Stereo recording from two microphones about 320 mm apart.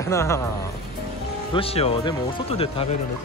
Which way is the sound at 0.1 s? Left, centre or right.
Centre.